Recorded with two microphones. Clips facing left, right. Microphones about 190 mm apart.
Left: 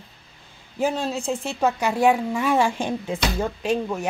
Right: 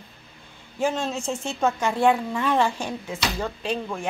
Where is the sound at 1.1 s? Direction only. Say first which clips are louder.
Left 3 dB; 35° left (ahead or behind).